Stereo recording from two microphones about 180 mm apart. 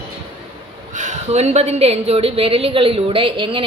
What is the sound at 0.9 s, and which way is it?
A woman's voice, 40° right (ahead or behind).